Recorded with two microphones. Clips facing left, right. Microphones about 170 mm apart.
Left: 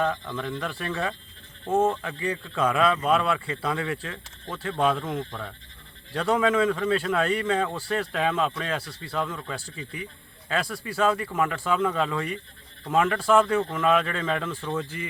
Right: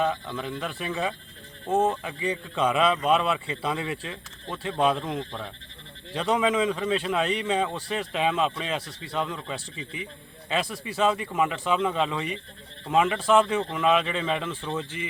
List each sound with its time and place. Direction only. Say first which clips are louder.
0.0 s a man's voice: even; 10° right (ahead or behind)